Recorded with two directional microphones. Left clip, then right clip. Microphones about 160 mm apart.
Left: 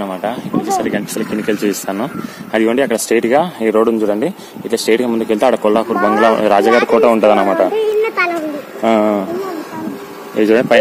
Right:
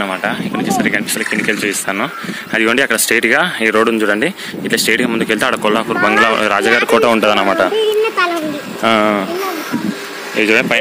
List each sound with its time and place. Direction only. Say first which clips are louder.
0.0 s speech: right 2 dB; 10° left (ahead or behind)
2.5 s speech: right 1 dB; 5° left (ahead or behind)
6.9 s speech: left 1 dB; 15° right (ahead or behind)
7.2 s speech: left 1 dB; 5° right (ahead or behind)
8.8 s speech: even; centre (ahead or behind)
10.3 s speech: left 1 dB; 20° left (ahead or behind)